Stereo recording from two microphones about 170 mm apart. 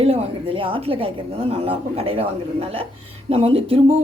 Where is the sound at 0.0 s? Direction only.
35° right (ahead or behind).